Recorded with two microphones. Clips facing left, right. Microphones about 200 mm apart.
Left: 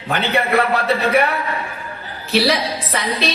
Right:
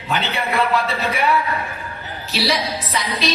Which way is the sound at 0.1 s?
60° left (ahead or behind).